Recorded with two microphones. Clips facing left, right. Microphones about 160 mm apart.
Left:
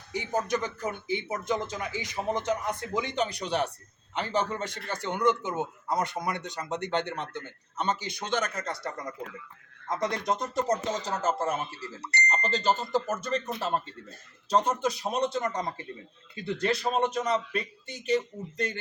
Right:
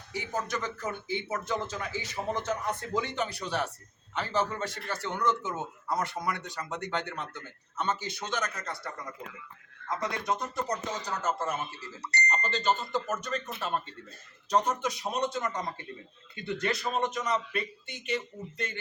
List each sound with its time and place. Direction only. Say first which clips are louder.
0.1 s a man's voice: left 5 dB; 20° left (ahead or behind)
8.2 s speech: left 4 dB; 30° left (ahead or behind)
8.7 s a man's voice: left 4 dB; 40° left (ahead or behind)
10.7 s a man's voice: left 5 dB; 25° left (ahead or behind)